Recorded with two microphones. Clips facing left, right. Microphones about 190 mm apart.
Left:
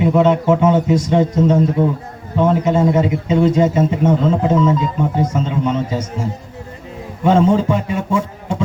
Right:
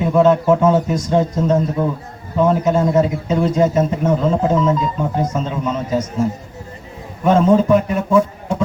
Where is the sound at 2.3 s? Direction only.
25° left (ahead or behind).